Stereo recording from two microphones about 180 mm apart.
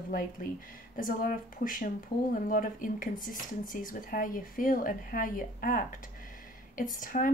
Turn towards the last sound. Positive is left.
turn(degrees=50)  # may be behind; listen again after turning